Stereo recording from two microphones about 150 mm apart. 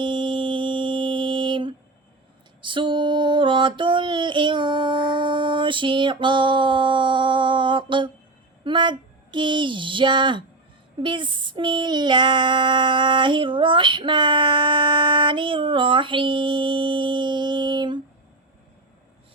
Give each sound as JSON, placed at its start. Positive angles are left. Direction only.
{"t": 0.0, "sound": "music", "side_deg": -30}
{"t": 2.6, "sound": "a sound", "side_deg": -35}
{"t": 8.6, "sound": "speech", "side_deg": -30}
{"t": 11.0, "sound": "child singing", "side_deg": -30}